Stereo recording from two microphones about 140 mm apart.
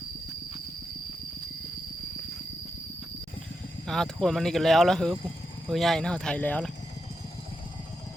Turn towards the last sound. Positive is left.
turn(degrees=10)  # may be behind; listen again after turning